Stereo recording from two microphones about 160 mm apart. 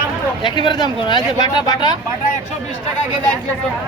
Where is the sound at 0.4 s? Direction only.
30° left (ahead or behind).